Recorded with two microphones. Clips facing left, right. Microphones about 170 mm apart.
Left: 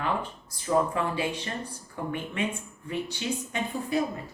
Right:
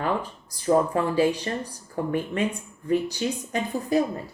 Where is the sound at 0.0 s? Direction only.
35° right (ahead or behind).